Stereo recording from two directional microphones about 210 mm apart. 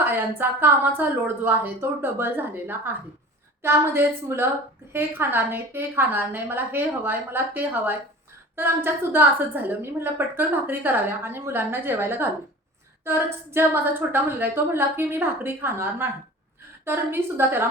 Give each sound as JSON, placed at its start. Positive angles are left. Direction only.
{"t": 0.0, "sound": "a woman's voice", "side_deg": -10}